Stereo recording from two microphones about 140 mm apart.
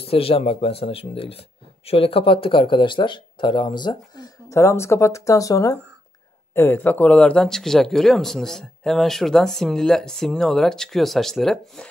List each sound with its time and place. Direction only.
0.0 s speech: 45° left (ahead or behind); by 11.9 s 5° left (ahead or behind)